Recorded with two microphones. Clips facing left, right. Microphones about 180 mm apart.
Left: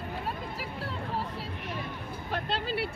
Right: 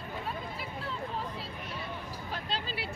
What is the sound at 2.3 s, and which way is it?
Vehicle, 60° left (ahead or behind).